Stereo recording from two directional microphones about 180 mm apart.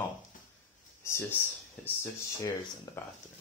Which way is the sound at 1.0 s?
10° left (ahead or behind).